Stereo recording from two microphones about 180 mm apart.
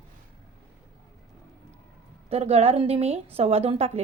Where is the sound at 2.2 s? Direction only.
35° right (ahead or behind).